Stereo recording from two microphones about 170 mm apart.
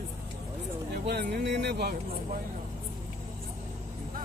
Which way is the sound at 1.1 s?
80° right.